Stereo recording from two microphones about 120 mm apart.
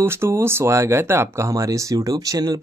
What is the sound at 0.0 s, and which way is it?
Speech, 20° right (ahead or behind).